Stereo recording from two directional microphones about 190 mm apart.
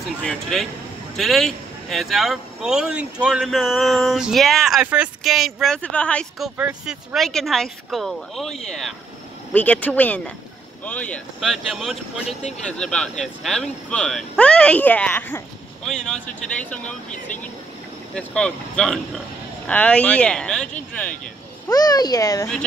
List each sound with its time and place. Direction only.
0.2 s speech: centre (ahead or behind)
6.5 s speech: 5° right (ahead or behind)
18.1 s speech: 5° left (ahead or behind)
21.6 s a child's voice: 20° left (ahead or behind)